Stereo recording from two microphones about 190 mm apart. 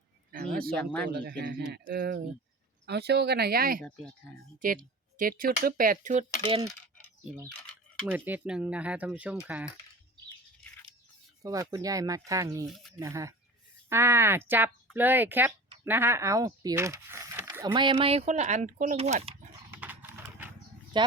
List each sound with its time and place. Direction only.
0.3 s a sound: 50° right (ahead or behind)
1.0 s speech: 55° right (ahead or behind)
3.8 s speech: 5° left (ahead or behind)
4.6 s speech: 45° right (ahead or behind)
8.0 s speech: 10° right (ahead or behind)
11.4 s speech: 15° right (ahead or behind)
12.6 s speech: centre (ahead or behind)
13.0 s speech: 15° right (ahead or behind); by 19.3 s 35° right (ahead or behind)
19.7 s horse: 10° right (ahead or behind)
20.9 s speech: 25° right (ahead or behind)